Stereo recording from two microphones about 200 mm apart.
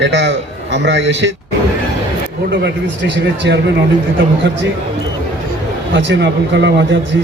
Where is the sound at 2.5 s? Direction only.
60° right (ahead or behind).